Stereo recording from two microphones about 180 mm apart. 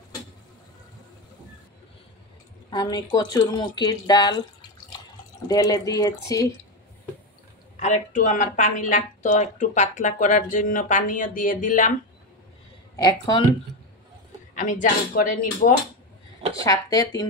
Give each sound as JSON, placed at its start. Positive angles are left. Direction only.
{"t": 2.7, "sound": "speech", "side_deg": 20}
{"t": 5.5, "sound": "speech", "side_deg": 20}
{"t": 7.8, "sound": "a woman's voice", "side_deg": 45}
{"t": 12.9, "sound": "speech", "side_deg": 20}
{"t": 14.6, "sound": "a woman's voice", "side_deg": 45}
{"t": 16.6, "sound": "speech", "side_deg": 20}